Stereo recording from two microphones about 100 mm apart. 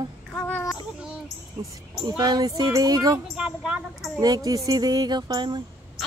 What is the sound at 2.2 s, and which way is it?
Speech, 40° right (ahead or behind).